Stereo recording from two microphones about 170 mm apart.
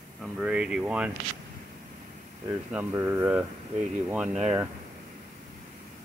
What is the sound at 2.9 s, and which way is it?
Speech, 15° right (ahead or behind).